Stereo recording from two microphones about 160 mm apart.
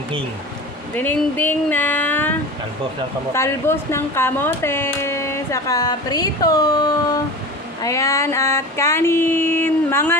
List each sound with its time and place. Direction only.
0.9 s speech: 10° left (ahead or behind)
3.3 s speech: 15° left (ahead or behind)